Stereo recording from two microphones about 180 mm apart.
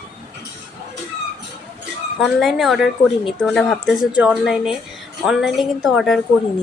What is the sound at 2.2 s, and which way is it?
A woman's voice, centre (ahead or behind).